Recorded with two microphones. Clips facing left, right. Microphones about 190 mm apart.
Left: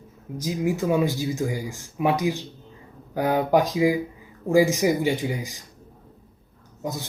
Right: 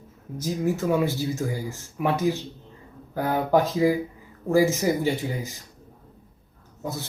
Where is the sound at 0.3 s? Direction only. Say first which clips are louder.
Left 1 dB; 15° left (ahead or behind).